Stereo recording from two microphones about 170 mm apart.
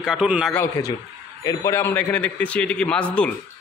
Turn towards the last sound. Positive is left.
turn(degrees=5)  # may be behind; listen again after turning